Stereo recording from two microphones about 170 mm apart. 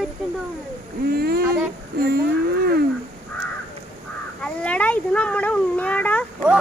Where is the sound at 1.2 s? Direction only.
65° right (ahead or behind).